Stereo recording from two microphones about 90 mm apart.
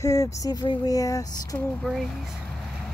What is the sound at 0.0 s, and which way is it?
Speech, 35° left (ahead or behind).